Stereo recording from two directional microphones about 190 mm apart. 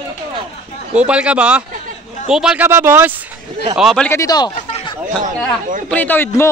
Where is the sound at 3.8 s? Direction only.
Centre (ahead or behind).